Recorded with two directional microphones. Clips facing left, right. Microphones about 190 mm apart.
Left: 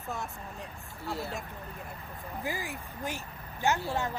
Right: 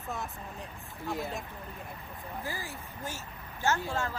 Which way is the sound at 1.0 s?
15° right (ahead or behind).